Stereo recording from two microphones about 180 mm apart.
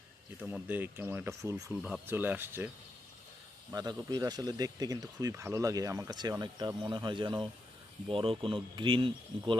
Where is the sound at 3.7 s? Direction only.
20° right (ahead or behind).